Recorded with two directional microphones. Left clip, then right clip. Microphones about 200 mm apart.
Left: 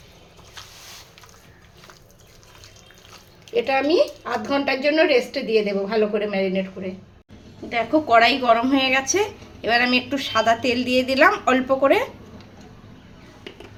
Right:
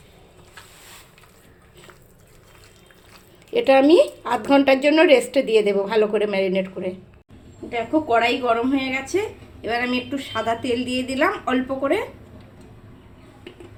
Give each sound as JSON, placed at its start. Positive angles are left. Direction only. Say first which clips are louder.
{"t": 3.5, "sound": "speech", "louder": "right 5 dB", "side_deg": -45}
{"t": 7.7, "sound": "a woman's voice", "louder": "left 3 dB", "side_deg": 35}